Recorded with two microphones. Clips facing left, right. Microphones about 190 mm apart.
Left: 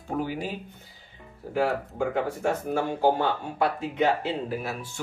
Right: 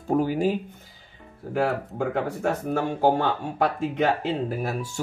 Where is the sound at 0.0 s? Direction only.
45° right (ahead or behind).